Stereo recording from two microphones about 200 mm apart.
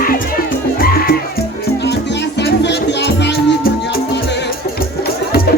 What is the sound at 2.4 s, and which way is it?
Music, 55° left (ahead or behind).